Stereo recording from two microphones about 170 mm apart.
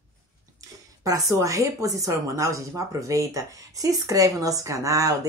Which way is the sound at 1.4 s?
20° right (ahead or behind).